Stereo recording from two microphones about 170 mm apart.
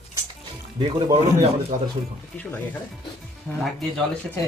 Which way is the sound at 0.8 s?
30° right (ahead or behind).